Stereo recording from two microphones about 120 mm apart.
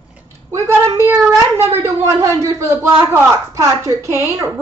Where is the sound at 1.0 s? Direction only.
20° right (ahead or behind).